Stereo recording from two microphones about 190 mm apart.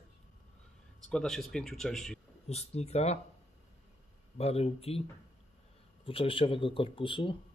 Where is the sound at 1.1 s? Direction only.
Centre (ahead or behind).